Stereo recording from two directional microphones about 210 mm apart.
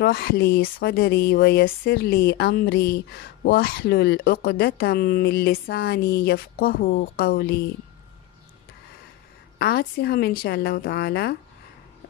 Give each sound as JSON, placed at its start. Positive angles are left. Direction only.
{"t": 0.0, "sound": "speech", "side_deg": 50}
{"t": 9.6, "sound": "speech", "side_deg": 45}